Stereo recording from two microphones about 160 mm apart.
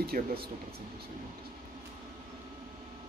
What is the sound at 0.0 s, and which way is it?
Speech, 75° right (ahead or behind).